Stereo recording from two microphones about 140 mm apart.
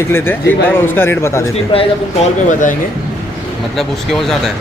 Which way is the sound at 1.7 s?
45° left (ahead or behind).